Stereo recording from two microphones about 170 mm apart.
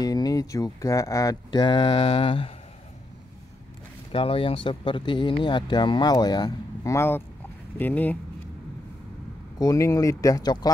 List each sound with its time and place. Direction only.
0.0 s speech: 20° left (ahead or behind)
4.1 s speech: 35° left (ahead or behind); by 8.2 s 10° left (ahead or behind)
9.6 s speech: 20° left (ahead or behind)